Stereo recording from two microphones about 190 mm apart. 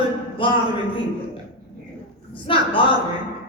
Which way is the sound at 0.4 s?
25° left (ahead or behind).